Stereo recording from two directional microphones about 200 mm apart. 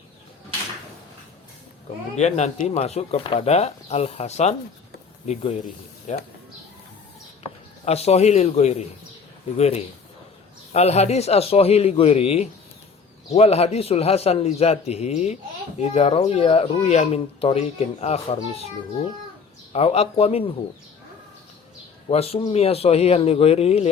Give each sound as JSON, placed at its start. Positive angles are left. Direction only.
{"t": 2.1, "sound": "speech", "side_deg": 35}
{"t": 7.9, "sound": "speech", "side_deg": 30}
{"t": 19.7, "sound": "speech", "side_deg": 30}
{"t": 22.1, "sound": "speech", "side_deg": 30}